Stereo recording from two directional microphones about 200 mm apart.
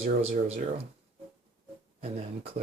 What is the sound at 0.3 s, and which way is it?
Speech, 35° right (ahead or behind).